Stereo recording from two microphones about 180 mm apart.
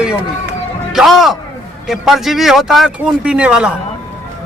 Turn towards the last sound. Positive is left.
turn(degrees=-5)  # may be behind; listen again after turning